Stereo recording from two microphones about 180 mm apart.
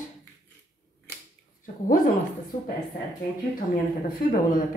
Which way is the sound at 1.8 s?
50° left (ahead or behind).